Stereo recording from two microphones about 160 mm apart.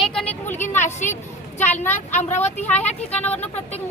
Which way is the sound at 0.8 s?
50° left (ahead or behind).